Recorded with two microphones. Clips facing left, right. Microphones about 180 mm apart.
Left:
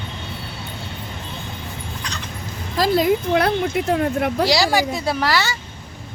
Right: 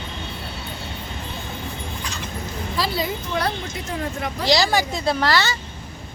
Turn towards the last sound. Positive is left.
turn(degrees=10)  # may be behind; listen again after turning